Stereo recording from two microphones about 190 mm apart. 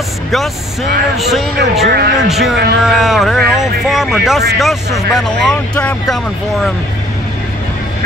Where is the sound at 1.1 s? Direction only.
Centre (ahead or behind).